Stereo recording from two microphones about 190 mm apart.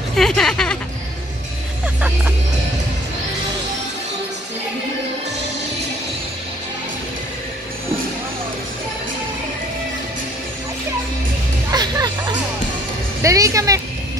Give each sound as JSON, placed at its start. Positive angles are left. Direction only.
{"t": 0.1, "sound": "speech", "side_deg": 5}
{"t": 11.7, "sound": "music", "side_deg": -20}
{"t": 13.2, "sound": "speech", "side_deg": -15}